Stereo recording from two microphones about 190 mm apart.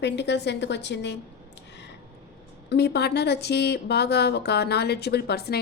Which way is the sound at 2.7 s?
60° left (ahead or behind).